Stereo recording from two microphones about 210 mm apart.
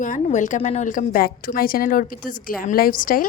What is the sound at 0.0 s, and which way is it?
A woman's voice, 35° left (ahead or behind).